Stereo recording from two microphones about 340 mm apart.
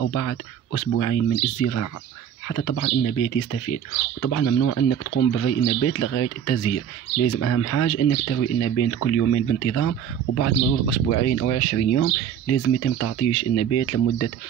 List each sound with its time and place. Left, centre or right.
0.0 s speech: left
4.2 s speech: left